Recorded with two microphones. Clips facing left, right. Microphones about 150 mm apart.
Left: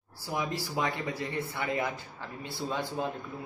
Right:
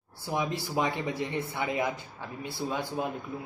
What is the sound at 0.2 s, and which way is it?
A man's voice, 20° right (ahead or behind).